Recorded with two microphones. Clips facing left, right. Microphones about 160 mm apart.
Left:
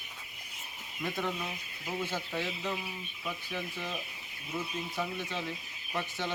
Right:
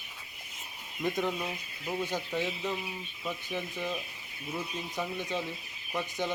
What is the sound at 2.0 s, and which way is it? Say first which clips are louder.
Speech: right 3 dB; 15° right (ahead or behind).